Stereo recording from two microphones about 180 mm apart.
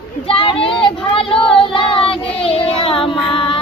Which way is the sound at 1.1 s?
30° left (ahead or behind).